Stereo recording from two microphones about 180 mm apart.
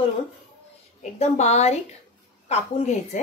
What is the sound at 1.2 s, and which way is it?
Speech, 35° left (ahead or behind).